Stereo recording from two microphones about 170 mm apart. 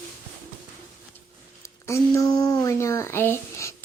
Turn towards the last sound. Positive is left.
turn(degrees=15)  # may be behind; listen again after turning